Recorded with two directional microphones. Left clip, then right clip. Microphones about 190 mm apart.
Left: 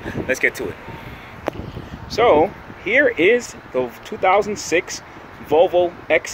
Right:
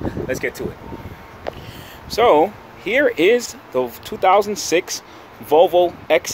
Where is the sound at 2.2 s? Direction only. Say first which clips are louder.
Right 1 dB; 25° right (ahead or behind).